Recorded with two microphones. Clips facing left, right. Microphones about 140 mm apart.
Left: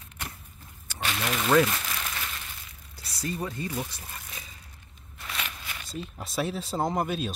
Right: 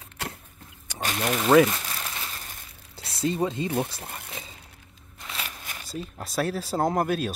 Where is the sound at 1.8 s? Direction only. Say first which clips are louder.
Even; 30° right (ahead or behind).